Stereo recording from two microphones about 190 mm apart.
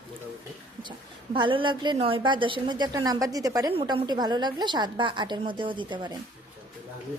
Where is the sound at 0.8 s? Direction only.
25° right (ahead or behind).